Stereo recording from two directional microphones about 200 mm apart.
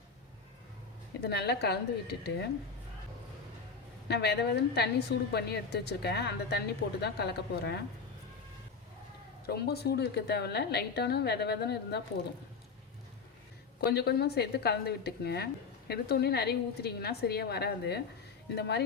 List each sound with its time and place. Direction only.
1.2 s a woman's voice: 55° left (ahead or behind)
4.1 s a woman's voice: 55° left (ahead or behind)
9.5 s a woman's voice: 55° left (ahead or behind)
13.8 s a woman's voice: 55° left (ahead or behind)